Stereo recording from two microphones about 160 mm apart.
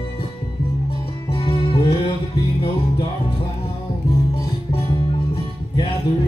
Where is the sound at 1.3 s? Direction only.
35° left (ahead or behind).